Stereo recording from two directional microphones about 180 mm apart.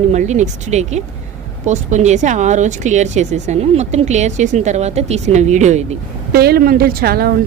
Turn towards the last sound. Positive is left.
turn(degrees=-55)  # may be behind; listen again after turning